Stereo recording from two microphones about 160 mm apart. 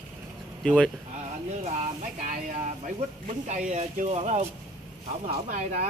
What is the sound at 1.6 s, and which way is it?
Speech, 50° right (ahead or behind).